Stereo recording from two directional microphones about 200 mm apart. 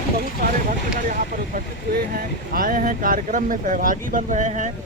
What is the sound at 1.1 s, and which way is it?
Speech, 45° right (ahead or behind).